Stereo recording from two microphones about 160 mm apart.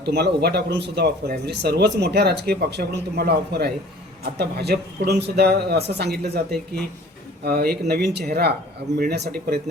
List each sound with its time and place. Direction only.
0.0 s speech: 90° right
7.4 s speech: 80° right